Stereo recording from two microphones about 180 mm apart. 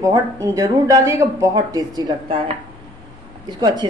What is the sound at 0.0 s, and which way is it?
A woman's voice, 15° right (ahead or behind).